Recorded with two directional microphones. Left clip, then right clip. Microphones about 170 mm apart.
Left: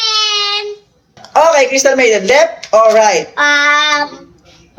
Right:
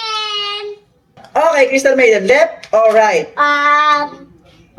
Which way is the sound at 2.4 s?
25° right (ahead or behind).